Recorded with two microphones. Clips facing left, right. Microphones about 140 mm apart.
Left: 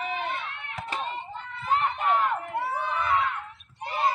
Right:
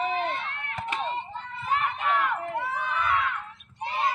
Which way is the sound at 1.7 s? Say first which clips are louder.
Left 2 dB; 35° left (ahead or behind).